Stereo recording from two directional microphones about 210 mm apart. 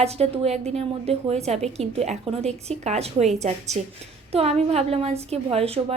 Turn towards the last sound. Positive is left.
turn(degrees=-30)  # may be behind; listen again after turning